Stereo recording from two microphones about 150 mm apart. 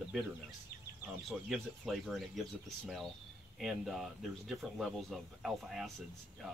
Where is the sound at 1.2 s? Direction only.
Centre (ahead or behind).